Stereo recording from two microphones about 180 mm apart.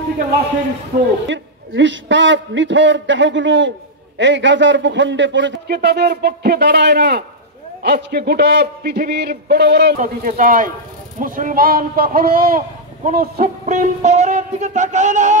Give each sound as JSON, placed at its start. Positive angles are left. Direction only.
{"t": 1.2, "sound": "a man's voice", "side_deg": -90}
{"t": 9.9, "sound": "speech", "side_deg": -45}
{"t": 13.7, "sound": "music", "side_deg": -40}